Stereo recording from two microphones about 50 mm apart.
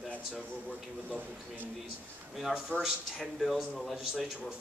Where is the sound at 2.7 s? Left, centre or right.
Right.